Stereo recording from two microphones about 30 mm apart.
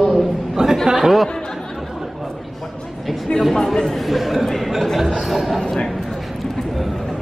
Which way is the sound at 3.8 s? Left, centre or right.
Centre.